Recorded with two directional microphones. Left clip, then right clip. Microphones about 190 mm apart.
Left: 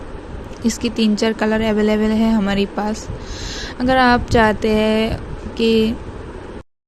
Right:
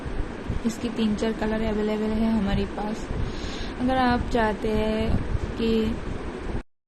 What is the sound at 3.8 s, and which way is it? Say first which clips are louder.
Speech: left 9 dB; 45° left (ahead or behind).